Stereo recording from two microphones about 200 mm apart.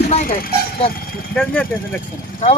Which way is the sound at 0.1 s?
40° left (ahead or behind).